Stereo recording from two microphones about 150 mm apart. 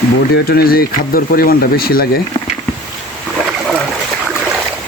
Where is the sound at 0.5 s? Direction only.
90° left.